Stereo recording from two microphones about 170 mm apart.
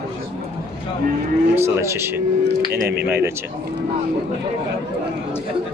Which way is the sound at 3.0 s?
15° right (ahead or behind).